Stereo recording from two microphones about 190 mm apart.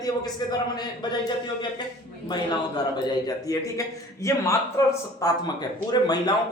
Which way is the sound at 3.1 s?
20° left (ahead or behind).